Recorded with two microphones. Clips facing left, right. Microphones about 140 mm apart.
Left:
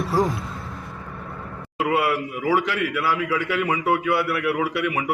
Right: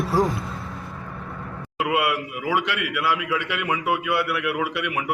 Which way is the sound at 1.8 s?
5° right (ahead or behind).